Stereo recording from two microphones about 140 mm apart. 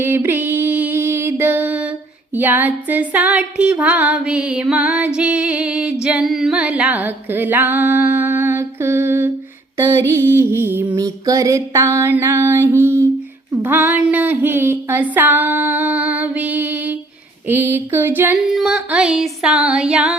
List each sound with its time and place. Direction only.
0.0 s music: 15° right (ahead or behind)
2.3 s female singing: 15° right (ahead or behind)
9.7 s music: 20° right (ahead or behind)
13.7 s female singing: 15° right (ahead or behind)
18.4 s a sound: 5° right (ahead or behind)